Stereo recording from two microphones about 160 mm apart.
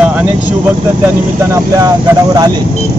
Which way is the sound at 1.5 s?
20° right (ahead or behind).